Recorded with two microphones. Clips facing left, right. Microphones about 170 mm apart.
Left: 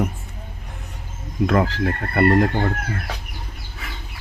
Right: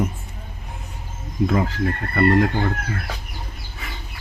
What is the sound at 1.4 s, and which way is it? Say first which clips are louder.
Speech: left 2 dB; 65° left (ahead or behind).